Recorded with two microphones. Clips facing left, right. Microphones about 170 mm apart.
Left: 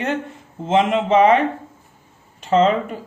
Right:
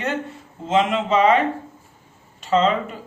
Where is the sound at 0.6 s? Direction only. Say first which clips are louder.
Left 2 dB; 50° left (ahead or behind).